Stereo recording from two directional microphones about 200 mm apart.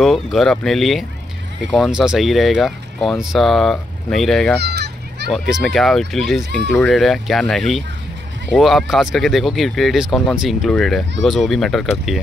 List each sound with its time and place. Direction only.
0.0 s speech: centre (ahead or behind)
4.6 s children playing: 55° right (ahead or behind)
5.3 s speech: centre (ahead or behind)